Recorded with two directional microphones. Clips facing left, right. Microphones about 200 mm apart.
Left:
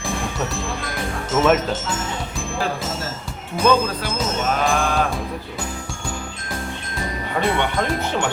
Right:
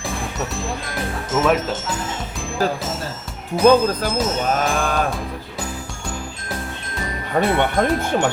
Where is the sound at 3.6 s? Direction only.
40° right (ahead or behind).